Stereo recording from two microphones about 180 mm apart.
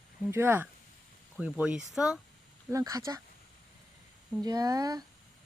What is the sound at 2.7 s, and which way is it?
Speech, 20° right (ahead or behind).